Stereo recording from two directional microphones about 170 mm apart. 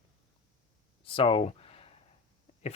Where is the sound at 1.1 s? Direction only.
30° left (ahead or behind).